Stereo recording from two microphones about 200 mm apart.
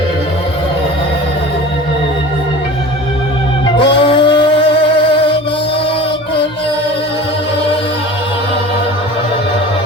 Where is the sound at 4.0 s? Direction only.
25° left (ahead or behind).